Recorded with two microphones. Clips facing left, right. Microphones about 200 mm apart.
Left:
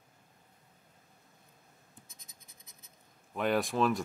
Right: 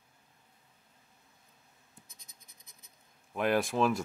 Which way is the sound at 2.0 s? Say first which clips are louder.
Even; 25° left (ahead or behind).